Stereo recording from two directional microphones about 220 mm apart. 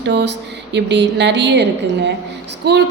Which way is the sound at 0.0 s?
50° right (ahead or behind).